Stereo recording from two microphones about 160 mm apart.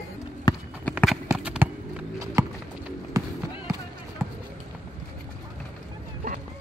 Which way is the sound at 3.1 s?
20° right (ahead or behind).